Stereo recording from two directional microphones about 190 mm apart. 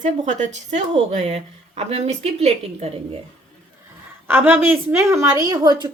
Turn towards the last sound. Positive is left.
turn(degrees=-20)  # may be behind; listen again after turning